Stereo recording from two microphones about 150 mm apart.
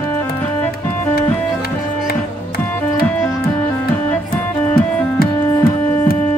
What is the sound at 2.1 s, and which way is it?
Music, 90° left.